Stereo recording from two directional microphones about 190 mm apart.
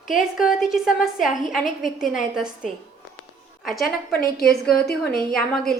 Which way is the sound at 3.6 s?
Centre (ahead or behind).